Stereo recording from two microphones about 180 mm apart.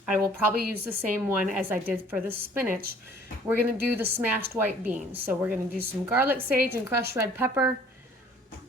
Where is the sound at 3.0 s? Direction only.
10° right (ahead or behind).